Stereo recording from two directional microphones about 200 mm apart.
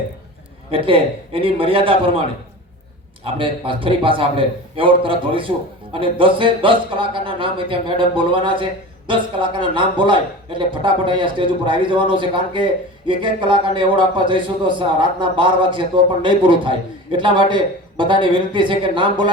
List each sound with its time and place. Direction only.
0.7 s a man's voice: 25° right (ahead or behind)
3.3 s a man's voice: 25° right (ahead or behind)